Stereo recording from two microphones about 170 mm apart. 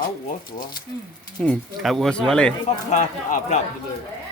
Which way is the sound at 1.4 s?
5° left (ahead or behind).